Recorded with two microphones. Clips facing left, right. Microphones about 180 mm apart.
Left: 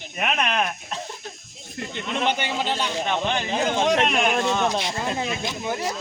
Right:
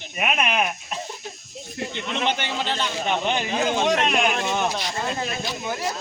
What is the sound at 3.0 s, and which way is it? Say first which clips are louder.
Speech: right 3 dB; 15° right (ahead or behind).